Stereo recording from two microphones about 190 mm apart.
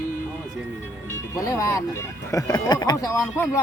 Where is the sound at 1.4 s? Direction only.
15° left (ahead or behind).